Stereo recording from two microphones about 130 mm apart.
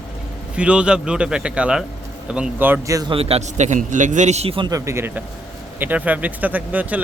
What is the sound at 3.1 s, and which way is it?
A man's voice, 50° right (ahead or behind).